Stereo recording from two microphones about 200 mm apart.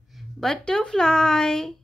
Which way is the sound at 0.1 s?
Centre (ahead or behind).